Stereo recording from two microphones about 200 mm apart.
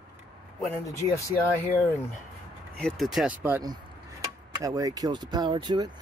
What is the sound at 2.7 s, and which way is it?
Speech, centre (ahead or behind).